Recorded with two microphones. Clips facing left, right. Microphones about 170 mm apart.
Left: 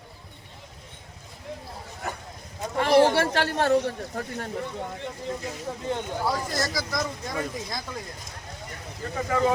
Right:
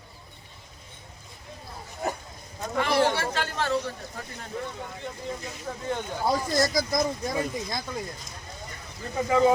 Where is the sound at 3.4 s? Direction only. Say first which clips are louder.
Left 5 dB; 55° left (ahead or behind).